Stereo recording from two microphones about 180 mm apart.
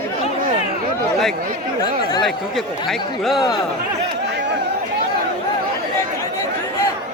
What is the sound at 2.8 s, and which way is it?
Speech, centre (ahead or behind).